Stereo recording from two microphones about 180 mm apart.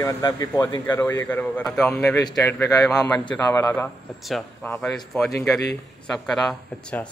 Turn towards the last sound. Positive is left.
turn(degrees=0)  # may be behind; listen again after turning